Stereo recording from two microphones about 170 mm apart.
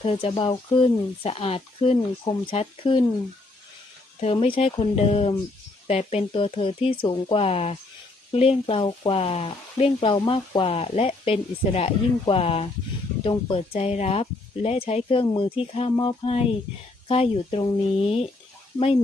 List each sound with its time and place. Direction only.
0.0 s speech: 40° left (ahead or behind)
4.2 s speech: 35° left (ahead or behind)